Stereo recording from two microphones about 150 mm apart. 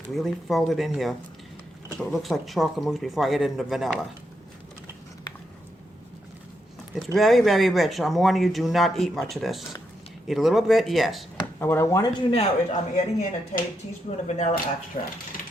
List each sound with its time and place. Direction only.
0.1 s speech: centre (ahead or behind)
7.0 s speech: centre (ahead or behind)
11.6 s speech: 15° left (ahead or behind)
12.3 s speech: 40° left (ahead or behind)